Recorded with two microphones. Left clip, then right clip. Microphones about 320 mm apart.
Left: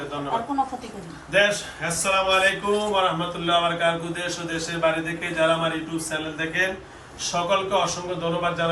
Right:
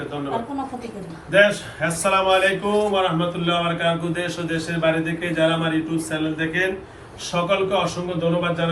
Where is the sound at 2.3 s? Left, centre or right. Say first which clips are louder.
Right 2 dB; centre.